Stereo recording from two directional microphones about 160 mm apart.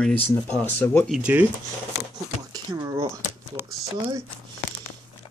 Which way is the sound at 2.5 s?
25° right (ahead or behind).